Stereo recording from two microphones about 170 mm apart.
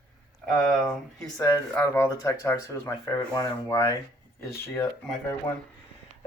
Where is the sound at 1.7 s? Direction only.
15° left (ahead or behind).